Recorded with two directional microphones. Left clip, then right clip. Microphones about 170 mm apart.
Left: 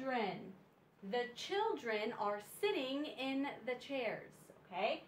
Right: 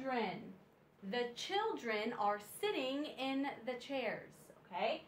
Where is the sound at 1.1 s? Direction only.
20° right (ahead or behind).